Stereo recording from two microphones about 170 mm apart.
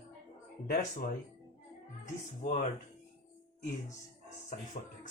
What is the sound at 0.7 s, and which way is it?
Speech, 55° left (ahead or behind).